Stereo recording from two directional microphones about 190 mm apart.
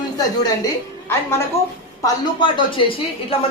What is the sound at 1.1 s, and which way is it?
Speech, 15° left (ahead or behind).